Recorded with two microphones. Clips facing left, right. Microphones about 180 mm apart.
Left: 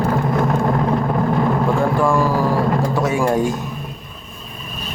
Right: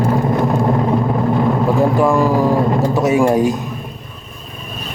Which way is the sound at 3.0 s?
20° right (ahead or behind).